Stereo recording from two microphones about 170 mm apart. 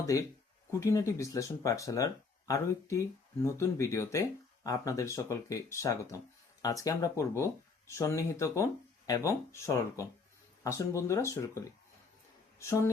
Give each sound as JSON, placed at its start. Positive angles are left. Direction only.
{"t": 0.0, "sound": "speech", "side_deg": 20}